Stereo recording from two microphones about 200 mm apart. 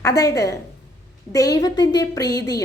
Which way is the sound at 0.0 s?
15° left (ahead or behind).